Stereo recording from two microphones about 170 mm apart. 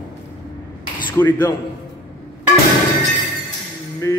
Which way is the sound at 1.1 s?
10° left (ahead or behind).